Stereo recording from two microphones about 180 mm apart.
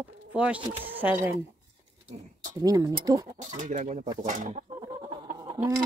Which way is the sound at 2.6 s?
20° right (ahead or behind).